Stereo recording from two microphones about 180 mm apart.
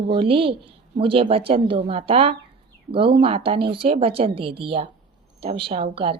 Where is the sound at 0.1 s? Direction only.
30° right (ahead or behind).